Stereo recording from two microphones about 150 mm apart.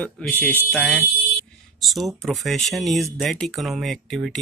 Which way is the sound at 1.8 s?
Centre (ahead or behind).